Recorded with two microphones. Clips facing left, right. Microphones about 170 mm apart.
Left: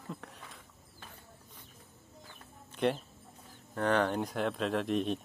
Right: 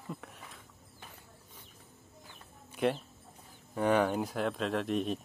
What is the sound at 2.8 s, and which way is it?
Speech, 5° right (ahead or behind).